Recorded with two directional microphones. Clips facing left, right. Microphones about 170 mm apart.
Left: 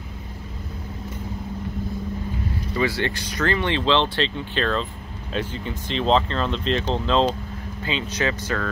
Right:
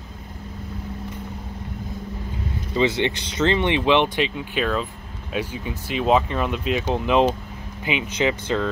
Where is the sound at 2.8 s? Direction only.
20° right (ahead or behind).